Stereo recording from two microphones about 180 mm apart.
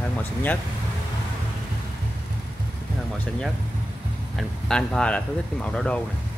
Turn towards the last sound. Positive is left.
turn(degrees=5)  # may be behind; listen again after turning